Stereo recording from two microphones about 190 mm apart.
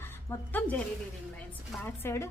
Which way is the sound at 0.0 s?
10° left (ahead or behind).